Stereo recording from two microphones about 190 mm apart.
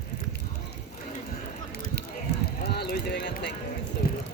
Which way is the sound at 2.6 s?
55° left (ahead or behind).